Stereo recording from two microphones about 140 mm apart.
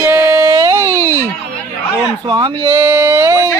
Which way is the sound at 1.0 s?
20° left (ahead or behind).